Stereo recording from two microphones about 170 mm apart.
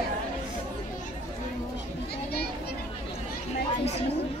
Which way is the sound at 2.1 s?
65° left (ahead or behind).